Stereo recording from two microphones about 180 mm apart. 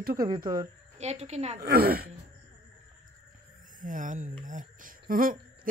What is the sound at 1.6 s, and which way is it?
Speech, 55° right (ahead or behind).